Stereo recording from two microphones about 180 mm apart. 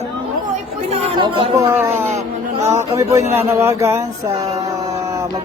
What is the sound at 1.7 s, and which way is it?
Speech, 10° right (ahead or behind).